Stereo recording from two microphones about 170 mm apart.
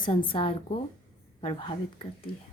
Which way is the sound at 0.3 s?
30° left (ahead or behind).